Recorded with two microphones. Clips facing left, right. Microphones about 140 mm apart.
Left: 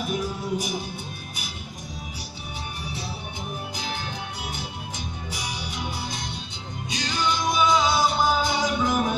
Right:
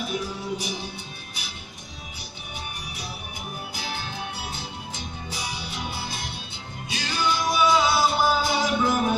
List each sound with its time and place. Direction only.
0.1 s music: 45° left (ahead or behind)
2.9 s music: 25° left (ahead or behind)